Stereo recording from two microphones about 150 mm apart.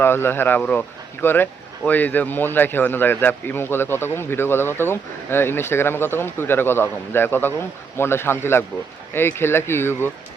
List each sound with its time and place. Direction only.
0.0 s speech: 15° left (ahead or behind)